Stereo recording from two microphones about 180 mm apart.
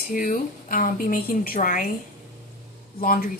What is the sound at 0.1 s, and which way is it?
A woman's voice, 50° left (ahead or behind).